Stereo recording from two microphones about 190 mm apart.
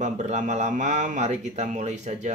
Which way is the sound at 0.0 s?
40° right (ahead or behind).